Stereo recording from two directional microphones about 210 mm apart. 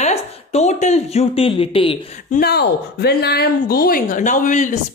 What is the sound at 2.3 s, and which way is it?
Speech, 50° left (ahead or behind).